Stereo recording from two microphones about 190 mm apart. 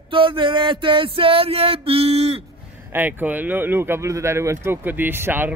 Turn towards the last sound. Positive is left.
turn(degrees=-10)  # may be behind; listen again after turning